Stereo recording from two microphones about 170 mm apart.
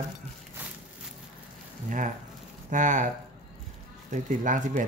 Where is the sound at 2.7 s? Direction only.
45° right (ahead or behind).